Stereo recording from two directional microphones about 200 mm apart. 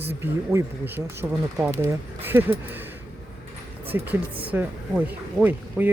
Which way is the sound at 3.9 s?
10° right (ahead or behind).